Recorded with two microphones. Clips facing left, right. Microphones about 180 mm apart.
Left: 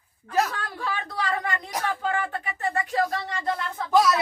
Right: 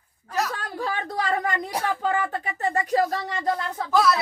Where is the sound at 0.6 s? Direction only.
40° right (ahead or behind).